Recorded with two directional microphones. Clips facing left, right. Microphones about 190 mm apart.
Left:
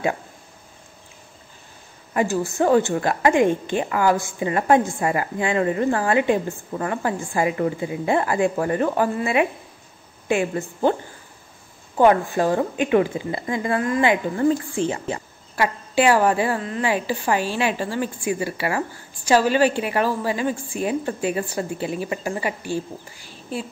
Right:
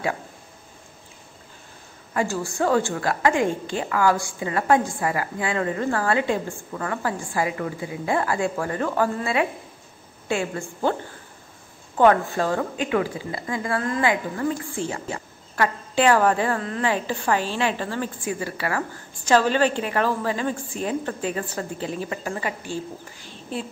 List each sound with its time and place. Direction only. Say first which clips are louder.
2.1 s a woman's voice: left 3 dB; 20° left (ahead or behind)
12.0 s a woman's voice: left 1 dB; 15° left (ahead or behind)
15.5 s a woman's voice: left 2 dB; 10° left (ahead or behind)